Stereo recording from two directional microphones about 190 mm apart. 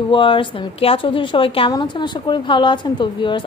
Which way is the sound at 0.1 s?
25° left (ahead or behind).